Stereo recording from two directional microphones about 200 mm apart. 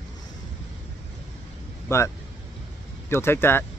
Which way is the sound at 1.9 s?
15° left (ahead or behind).